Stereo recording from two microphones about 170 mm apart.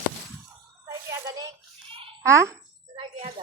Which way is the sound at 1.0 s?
20° right (ahead or behind).